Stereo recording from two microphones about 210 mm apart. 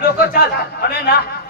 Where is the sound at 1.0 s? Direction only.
50° left (ahead or behind).